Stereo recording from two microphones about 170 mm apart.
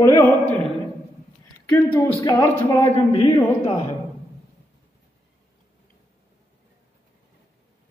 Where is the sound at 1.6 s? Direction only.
20° left (ahead or behind).